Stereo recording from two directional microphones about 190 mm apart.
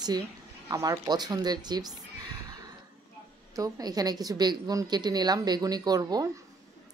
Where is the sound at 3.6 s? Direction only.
20° right (ahead or behind).